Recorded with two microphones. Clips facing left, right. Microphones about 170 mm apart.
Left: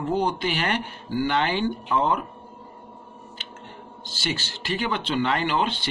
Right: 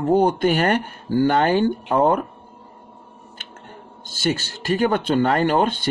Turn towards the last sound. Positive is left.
turn(degrees=-50)  # may be behind; listen again after turning